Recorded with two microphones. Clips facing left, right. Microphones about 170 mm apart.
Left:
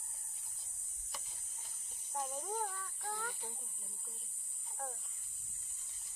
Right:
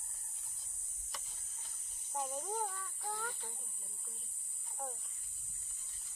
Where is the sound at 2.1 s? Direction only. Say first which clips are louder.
Right 1 dB; centre (ahead or behind).